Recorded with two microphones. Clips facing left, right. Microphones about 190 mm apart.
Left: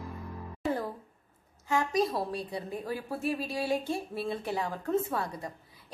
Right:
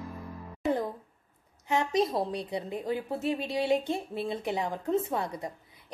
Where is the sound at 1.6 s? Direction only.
20° right (ahead or behind).